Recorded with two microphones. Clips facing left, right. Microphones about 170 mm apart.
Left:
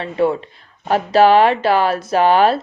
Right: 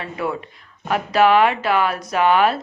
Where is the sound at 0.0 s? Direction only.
30° left (ahead or behind).